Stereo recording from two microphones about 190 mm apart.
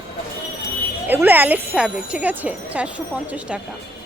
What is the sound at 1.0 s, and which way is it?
Speech, 10° right (ahead or behind).